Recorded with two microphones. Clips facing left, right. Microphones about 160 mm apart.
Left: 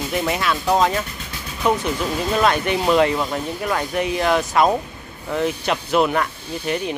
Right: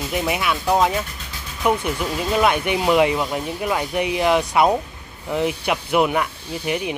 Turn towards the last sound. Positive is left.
turn(degrees=-15)  # may be behind; listen again after turning